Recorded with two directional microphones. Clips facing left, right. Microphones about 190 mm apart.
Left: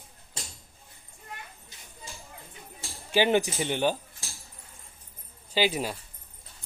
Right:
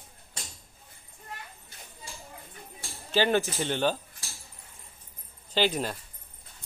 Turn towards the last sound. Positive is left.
turn(degrees=10)  # may be behind; listen again after turning